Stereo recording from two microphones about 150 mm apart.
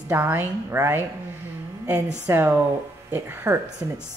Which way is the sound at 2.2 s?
15° right (ahead or behind).